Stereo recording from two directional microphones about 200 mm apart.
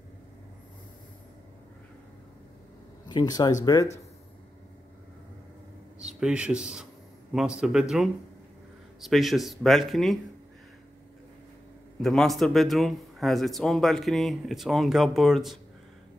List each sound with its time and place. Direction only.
3.1 s speech: 20° left (ahead or behind)
6.1 s speech: 5° right (ahead or behind)
9.0 s speech: centre (ahead or behind)
12.0 s speech: centre (ahead or behind)